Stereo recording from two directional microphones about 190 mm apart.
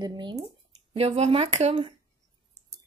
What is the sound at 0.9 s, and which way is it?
Speech, 30° right (ahead or behind).